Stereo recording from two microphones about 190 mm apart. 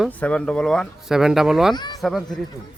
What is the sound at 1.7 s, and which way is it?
Speech, 20° left (ahead or behind).